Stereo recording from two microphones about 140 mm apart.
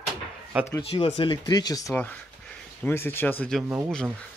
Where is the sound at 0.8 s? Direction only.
40° left (ahead or behind); by 3.5 s 15° left (ahead or behind).